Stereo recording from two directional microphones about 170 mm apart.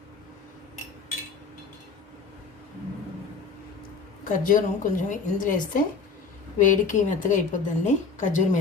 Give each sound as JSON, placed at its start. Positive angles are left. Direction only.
{"t": 4.2, "sound": "a woman's voice", "side_deg": 50}